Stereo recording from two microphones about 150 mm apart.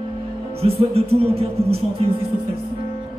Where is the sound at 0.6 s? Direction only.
40° right (ahead or behind).